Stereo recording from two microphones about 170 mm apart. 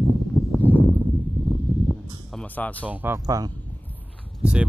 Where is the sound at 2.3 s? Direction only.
10° left (ahead or behind).